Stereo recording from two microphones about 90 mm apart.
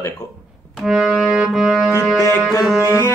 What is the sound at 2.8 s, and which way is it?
Music, 35° left (ahead or behind).